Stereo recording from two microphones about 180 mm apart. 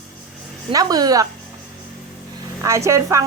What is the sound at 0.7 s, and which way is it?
Speech, 20° right (ahead or behind).